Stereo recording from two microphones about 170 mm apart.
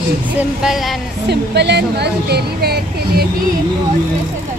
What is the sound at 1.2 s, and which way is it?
Speech, 80° right.